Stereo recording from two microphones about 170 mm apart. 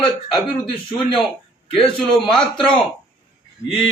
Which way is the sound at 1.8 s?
5° left (ahead or behind).